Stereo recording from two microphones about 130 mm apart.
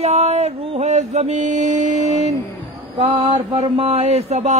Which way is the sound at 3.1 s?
40° right (ahead or behind).